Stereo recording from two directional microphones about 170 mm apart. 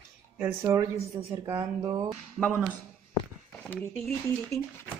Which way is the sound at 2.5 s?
10° right (ahead or behind).